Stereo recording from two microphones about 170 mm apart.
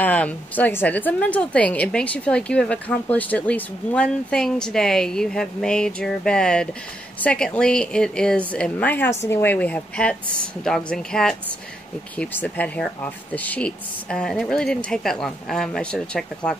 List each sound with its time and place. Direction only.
0.0 s a woman's voice: 10° left (ahead or behind)